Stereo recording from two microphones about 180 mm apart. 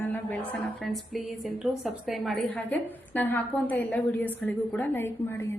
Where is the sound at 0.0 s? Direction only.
10° left (ahead or behind).